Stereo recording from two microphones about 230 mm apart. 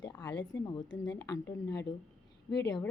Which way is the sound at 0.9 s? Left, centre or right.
Left.